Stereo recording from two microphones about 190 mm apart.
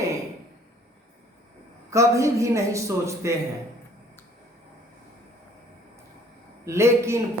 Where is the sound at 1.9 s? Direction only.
15° right (ahead or behind).